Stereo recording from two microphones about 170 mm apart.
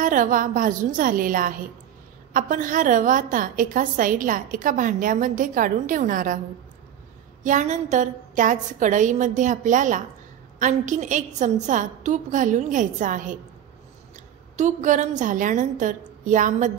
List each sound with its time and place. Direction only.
0.0 s a woman's voice: 50° right (ahead or behind)
7.4 s a woman's voice: 45° right (ahead or behind)